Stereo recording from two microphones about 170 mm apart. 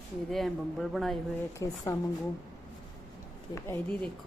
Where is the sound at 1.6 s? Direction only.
20° left (ahead or behind).